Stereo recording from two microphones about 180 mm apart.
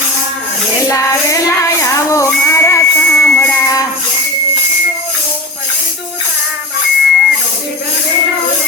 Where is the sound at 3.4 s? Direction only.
20° left (ahead or behind).